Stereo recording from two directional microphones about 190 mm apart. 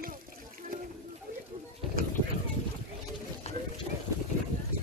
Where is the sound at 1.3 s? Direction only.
50° right (ahead or behind).